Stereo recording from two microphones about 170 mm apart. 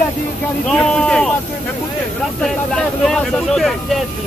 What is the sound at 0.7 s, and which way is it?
Speech, 5° left (ahead or behind).